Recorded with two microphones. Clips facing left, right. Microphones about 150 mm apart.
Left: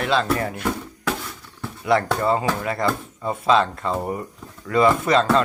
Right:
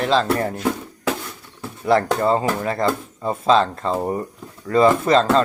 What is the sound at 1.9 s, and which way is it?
Speech, 30° right (ahead or behind).